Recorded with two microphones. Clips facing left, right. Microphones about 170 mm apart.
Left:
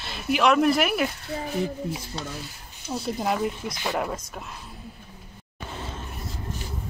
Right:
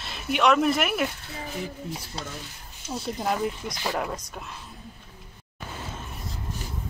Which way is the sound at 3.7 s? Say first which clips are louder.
Left 1 dB; 15° left (ahead or behind).